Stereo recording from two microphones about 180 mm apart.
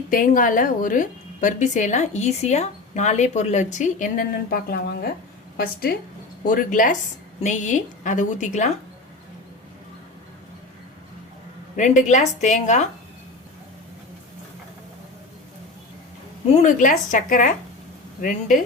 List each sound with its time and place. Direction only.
0.1 s a woman's voice: 50° left (ahead or behind)
6.4 s a woman's voice: 50° left (ahead or behind)
11.8 s a woman's voice: 40° left (ahead or behind)
16.6 s a woman's voice: 45° left (ahead or behind)